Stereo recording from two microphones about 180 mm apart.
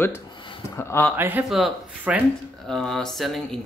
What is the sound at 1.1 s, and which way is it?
Speech, 10° right (ahead or behind).